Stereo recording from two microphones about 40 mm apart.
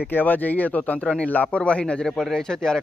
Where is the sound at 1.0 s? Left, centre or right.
Left.